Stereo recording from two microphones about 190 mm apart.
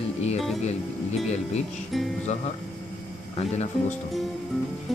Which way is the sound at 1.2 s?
35° left (ahead or behind).